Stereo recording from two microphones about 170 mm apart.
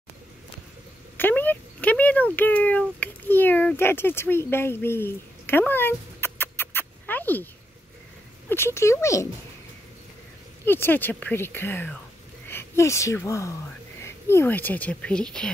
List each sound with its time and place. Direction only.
1.1 s a sound: 10° left (ahead or behind)
2.3 s speech: 10° left (ahead or behind)
8.5 s speech: 15° left (ahead or behind)
10.6 s speech: 15° left (ahead or behind)